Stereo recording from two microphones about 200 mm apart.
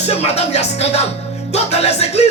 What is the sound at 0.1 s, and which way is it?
Speech, 30° left (ahead or behind).